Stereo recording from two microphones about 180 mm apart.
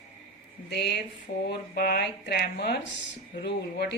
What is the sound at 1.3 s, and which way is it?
Mantra, 50° left (ahead or behind).